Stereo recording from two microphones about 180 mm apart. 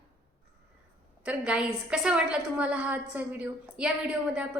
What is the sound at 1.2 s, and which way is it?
A woman's voice, 5° right (ahead or behind).